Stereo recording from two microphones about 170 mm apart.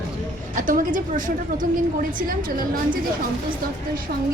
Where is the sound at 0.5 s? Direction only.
50° right (ahead or behind).